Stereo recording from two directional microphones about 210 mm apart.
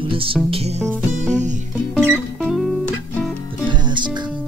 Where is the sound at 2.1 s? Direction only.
5° left (ahead or behind).